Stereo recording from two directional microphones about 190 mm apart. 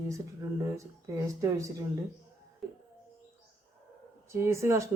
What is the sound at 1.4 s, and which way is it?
Speech, 15° right (ahead or behind).